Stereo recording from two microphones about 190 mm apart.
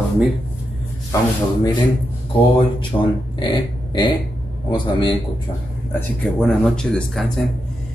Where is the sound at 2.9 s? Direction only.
20° left (ahead or behind).